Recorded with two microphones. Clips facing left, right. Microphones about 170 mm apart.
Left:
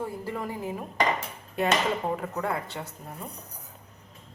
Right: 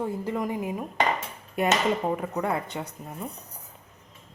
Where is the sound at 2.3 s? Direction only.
15° right (ahead or behind).